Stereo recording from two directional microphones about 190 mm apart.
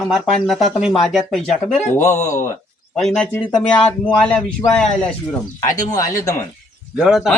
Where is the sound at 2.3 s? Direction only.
15° left (ahead or behind).